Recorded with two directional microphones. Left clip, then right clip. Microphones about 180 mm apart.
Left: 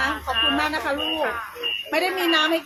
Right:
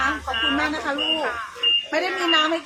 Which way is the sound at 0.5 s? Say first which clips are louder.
Even; 15° left (ahead or behind).